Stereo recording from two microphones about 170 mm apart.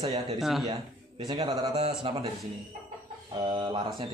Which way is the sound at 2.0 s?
30° right (ahead or behind).